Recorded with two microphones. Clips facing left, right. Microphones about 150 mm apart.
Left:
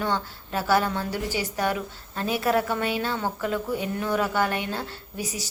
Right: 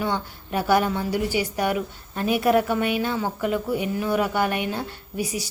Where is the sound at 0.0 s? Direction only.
15° right (ahead or behind).